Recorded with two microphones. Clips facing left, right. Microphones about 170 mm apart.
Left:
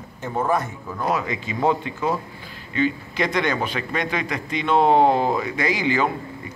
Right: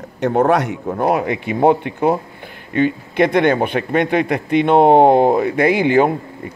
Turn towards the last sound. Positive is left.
turn(degrees=-55)  # may be behind; listen again after turning